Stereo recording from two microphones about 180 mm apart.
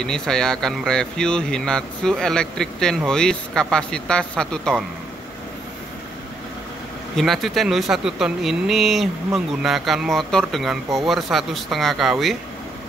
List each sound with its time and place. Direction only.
0.0 s speech: 5° left (ahead or behind)
7.2 s speech: centre (ahead or behind)